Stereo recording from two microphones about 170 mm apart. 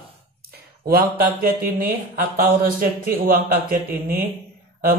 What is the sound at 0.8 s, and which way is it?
A man's voice, 60° right (ahead or behind).